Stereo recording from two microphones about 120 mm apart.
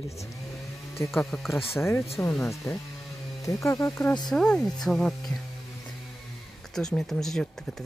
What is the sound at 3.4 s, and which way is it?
Speech, 25° left (ahead or behind).